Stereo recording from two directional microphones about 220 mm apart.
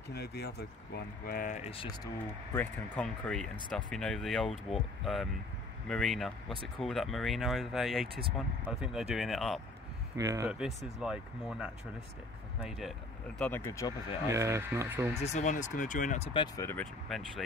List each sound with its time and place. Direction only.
0.1 s speech: 50° left (ahead or behind); by 2.0 s 25° left (ahead or behind)
2.5 s speech: 5° left (ahead or behind)
10.1 s speech: 15° right (ahead or behind)
13.4 s speech: 10° left (ahead or behind)
14.3 s speech: 15° right (ahead or behind)
15.1 s speech: 30° left (ahead or behind)
16.3 s speech: 10° left (ahead or behind)